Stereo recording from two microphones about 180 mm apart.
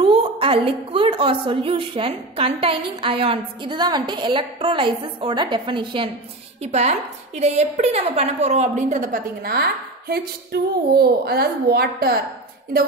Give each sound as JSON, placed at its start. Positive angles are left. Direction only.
{"t": 0.0, "sound": "a woman's voice", "side_deg": -30}
{"t": 6.6, "sound": "a woman's voice", "side_deg": -40}